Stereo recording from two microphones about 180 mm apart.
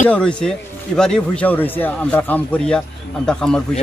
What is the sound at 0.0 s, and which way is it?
Speech, 5° left (ahead or behind).